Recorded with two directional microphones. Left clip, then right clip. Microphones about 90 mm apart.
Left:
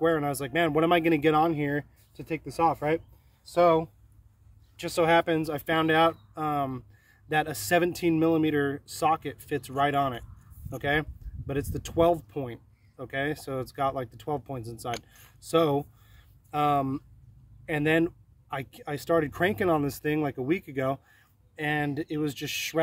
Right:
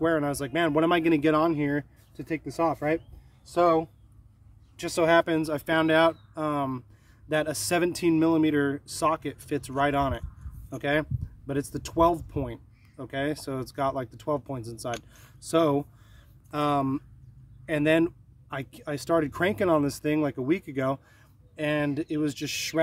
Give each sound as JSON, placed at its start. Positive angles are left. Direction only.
{"t": 0.0, "sound": "speech", "side_deg": -30}
{"t": 4.7, "sound": "speech", "side_deg": -45}
{"t": 14.9, "sound": "speech", "side_deg": 20}
{"t": 15.4, "sound": "speech", "side_deg": -30}